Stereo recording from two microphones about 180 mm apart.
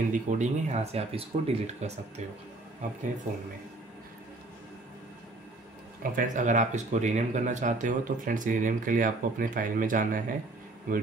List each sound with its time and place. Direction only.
0.1 s speech: 40° right (ahead or behind)
6.1 s speech: 45° right (ahead or behind)